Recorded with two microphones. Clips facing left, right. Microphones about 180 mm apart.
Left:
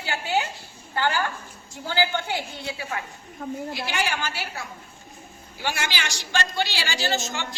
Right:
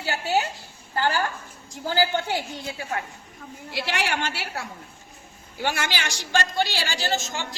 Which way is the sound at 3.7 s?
75° right (ahead or behind).